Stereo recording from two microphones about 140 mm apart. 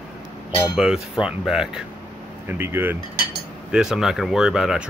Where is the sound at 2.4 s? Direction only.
15° right (ahead or behind).